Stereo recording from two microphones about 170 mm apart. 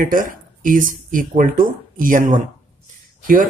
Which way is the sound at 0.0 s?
55° right (ahead or behind).